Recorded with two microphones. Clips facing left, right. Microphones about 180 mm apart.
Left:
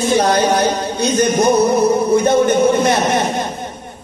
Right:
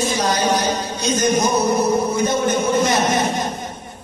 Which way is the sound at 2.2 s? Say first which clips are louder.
Left 6 dB; 60° left (ahead or behind).